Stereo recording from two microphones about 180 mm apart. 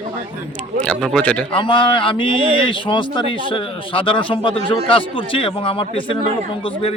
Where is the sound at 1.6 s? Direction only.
30° left (ahead or behind).